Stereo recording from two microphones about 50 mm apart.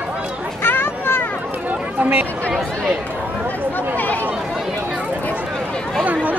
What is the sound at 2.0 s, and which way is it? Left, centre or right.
Speech, right.